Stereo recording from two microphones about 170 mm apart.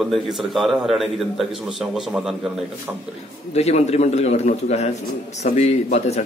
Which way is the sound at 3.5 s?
40° left (ahead or behind).